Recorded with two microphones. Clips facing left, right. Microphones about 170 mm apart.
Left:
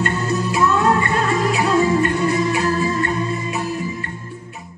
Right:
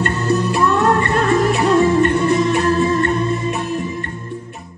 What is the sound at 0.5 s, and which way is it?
Music, 55° right (ahead or behind).